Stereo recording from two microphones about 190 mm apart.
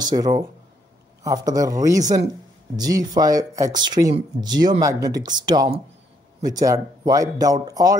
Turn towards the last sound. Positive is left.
turn(degrees=-20)  # may be behind; listen again after turning